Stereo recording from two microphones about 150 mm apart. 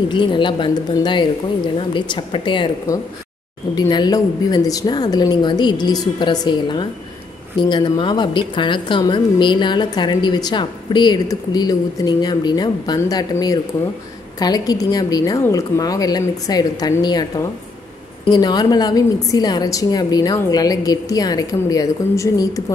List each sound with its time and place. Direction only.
0.1 s speech: 30° left (ahead or behind)
3.7 s a woman's voice: 30° left (ahead or behind)